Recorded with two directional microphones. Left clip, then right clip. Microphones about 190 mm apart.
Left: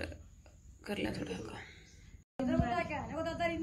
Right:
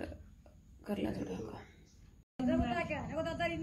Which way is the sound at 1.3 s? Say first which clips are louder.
Left 1 dB; centre (ahead or behind).